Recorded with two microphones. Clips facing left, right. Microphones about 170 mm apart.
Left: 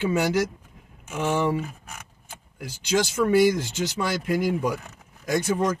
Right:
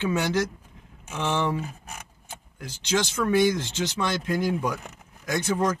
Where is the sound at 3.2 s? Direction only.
10° left (ahead or behind).